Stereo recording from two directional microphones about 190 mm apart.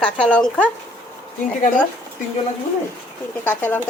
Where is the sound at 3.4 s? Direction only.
10° left (ahead or behind).